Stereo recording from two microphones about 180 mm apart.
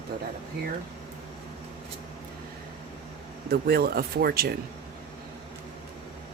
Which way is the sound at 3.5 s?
60° right (ahead or behind).